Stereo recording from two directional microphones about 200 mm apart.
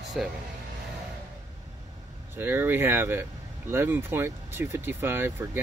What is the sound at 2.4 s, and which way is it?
Speech, 10° right (ahead or behind).